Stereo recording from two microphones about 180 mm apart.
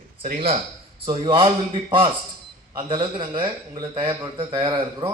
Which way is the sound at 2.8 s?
25° right (ahead or behind).